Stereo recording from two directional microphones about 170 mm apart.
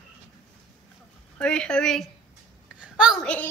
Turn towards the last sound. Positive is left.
turn(degrees=5)  # may be behind; listen again after turning